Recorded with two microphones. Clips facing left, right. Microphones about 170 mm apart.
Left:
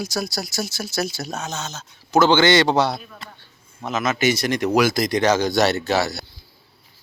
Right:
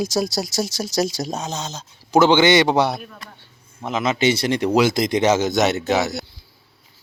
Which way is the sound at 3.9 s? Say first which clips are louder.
Right 1 dB; 25° right (ahead or behind).